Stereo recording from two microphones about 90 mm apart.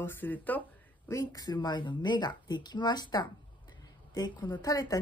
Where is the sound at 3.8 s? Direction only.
50° left (ahead or behind).